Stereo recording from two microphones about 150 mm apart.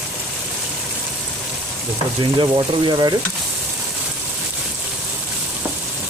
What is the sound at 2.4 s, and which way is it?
Speech, 30° right (ahead or behind).